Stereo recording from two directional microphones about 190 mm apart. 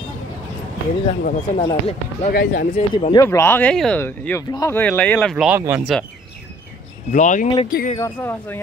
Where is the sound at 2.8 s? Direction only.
35° left (ahead or behind).